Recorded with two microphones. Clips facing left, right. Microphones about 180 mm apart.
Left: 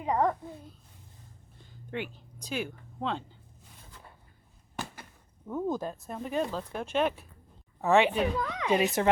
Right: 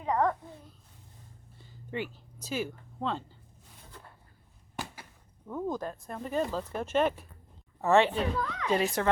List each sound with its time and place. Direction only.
0.0 s a child's voice: 15° left (ahead or behind)
1.5 s a sound: 5° right (ahead or behind)
4.8 s a sound: 10° right (ahead or behind)
5.5 s a woman's voice: 5° left (ahead or behind)
6.7 s speech: 5° right (ahead or behind)
7.9 s a woman's voice: 15° left (ahead or behind)